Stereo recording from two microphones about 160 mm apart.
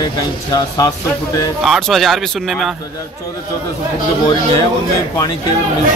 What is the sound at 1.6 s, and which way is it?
Speech, centre (ahead or behind).